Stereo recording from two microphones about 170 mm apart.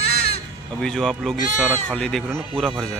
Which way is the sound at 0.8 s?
5° left (ahead or behind).